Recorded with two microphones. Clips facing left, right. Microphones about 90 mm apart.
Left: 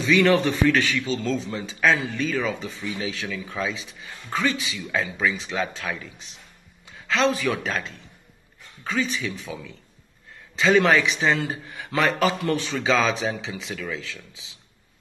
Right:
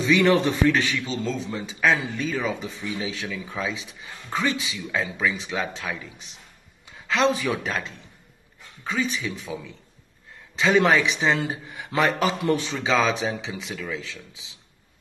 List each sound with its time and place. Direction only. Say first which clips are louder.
0.1 s a man's voice: left 1 dB; 15° right (ahead or behind)
5.2 s a man's voice: left 1 dB; 5° right (ahead or behind)
7.1 s a man's voice: even; 15° right (ahead or behind)
8.8 s a man's voice: left 1 dB; 15° right (ahead or behind)
10.6 s a man's voice: left 1 dB; 15° right (ahead or behind)